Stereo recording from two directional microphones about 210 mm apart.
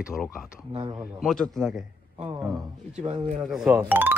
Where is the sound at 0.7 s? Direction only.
20° right (ahead or behind).